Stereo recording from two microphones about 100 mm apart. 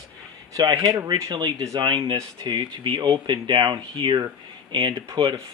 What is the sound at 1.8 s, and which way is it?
Speech, 50° right (ahead or behind).